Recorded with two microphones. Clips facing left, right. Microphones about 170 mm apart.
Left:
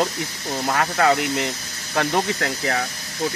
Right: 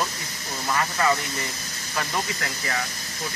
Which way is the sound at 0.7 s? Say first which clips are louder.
Left 4 dB; 75° left (ahead or behind).